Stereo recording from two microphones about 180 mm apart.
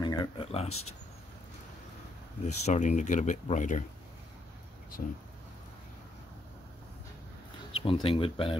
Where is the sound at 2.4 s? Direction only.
40° left (ahead or behind).